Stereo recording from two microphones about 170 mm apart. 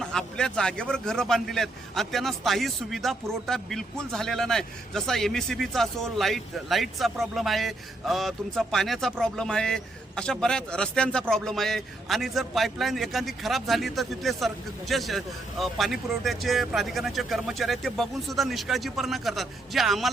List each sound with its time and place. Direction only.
0.0 s a man's voice: 5° left (ahead or behind)